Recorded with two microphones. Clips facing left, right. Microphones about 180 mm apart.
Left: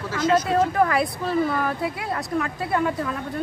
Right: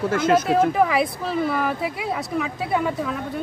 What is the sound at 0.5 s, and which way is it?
Speech, 5° right (ahead or behind).